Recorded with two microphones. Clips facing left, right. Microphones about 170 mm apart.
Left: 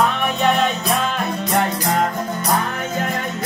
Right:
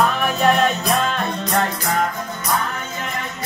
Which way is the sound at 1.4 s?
20° left (ahead or behind).